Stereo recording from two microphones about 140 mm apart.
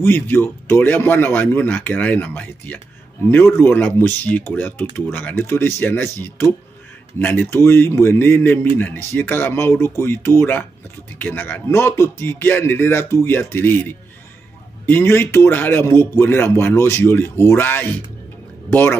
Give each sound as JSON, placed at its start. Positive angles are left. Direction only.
{"t": 0.0, "sound": "speech", "side_deg": 15}